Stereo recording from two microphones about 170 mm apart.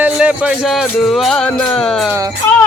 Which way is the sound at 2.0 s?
15° right (ahead or behind).